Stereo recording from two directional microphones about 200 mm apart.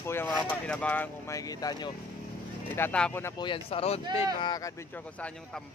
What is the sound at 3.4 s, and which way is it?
Speech, 25° left (ahead or behind).